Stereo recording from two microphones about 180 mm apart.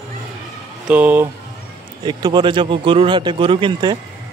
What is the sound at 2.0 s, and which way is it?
Speech, 25° right (ahead or behind).